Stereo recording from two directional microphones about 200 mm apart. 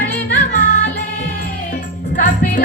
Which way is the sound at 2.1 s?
45° left (ahead or behind).